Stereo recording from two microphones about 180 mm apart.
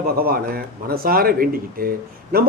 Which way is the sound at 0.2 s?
55° right (ahead or behind).